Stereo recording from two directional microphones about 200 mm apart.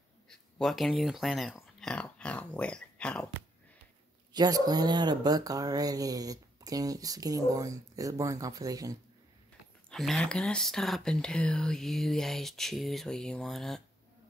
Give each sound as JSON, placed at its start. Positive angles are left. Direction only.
{"t": 0.3, "sound": "speech", "side_deg": 0}
{"t": 4.3, "sound": "speech", "side_deg": -20}
{"t": 9.8, "sound": "speech", "side_deg": 0}